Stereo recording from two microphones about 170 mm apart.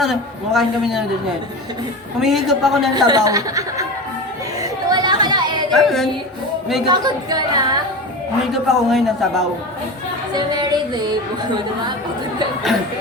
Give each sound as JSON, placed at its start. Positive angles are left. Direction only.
{"t": 0.0, "sound": "a man's voice", "side_deg": 0}
{"t": 2.2, "sound": "a man's voice", "side_deg": 0}
{"t": 2.9, "sound": "a woman's voice", "side_deg": -20}
{"t": 4.6, "sound": "chatter", "side_deg": -25}
{"t": 5.7, "sound": "a man's voice", "side_deg": 0}
{"t": 6.8, "sound": "a woman's voice", "side_deg": -25}
{"t": 8.6, "sound": "a man's voice", "side_deg": 0}
{"t": 10.3, "sound": "a sound", "side_deg": -25}